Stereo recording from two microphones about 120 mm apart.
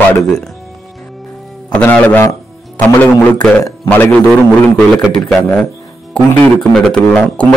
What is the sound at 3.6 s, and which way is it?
Speech, 15° left (ahead or behind).